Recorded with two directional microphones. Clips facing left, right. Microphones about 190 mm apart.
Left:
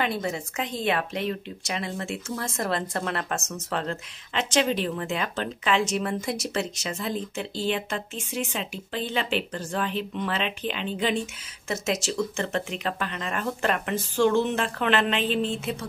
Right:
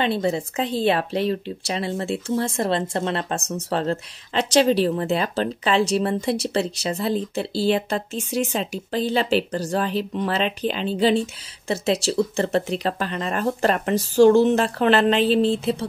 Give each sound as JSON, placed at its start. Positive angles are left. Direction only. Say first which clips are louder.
{"t": 0.0, "sound": "a woman's voice", "louder": "right 6 dB", "side_deg": -30}